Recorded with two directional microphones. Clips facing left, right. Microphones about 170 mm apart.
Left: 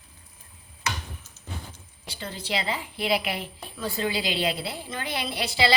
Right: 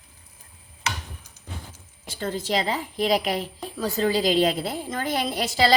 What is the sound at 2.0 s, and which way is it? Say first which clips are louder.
A woman's voice: right 7 dB; 50° right (ahead or behind).